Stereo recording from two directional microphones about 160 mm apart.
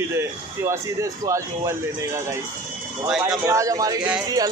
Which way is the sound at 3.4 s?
20° right (ahead or behind).